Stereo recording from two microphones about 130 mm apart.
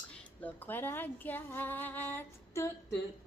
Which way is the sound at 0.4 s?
15° left (ahead or behind).